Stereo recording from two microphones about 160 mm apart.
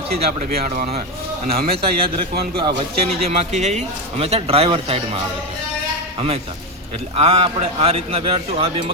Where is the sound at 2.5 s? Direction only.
35° right (ahead or behind).